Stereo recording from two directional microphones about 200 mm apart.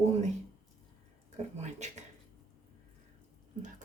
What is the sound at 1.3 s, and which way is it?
Speech, 35° right (ahead or behind).